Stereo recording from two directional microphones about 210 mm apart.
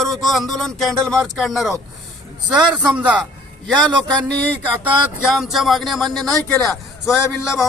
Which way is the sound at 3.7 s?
20° right (ahead or behind).